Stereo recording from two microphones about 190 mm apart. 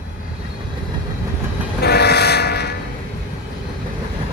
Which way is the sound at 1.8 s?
60° left (ahead or behind).